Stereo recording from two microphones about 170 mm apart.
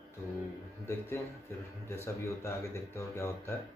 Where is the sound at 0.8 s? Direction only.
15° left (ahead or behind).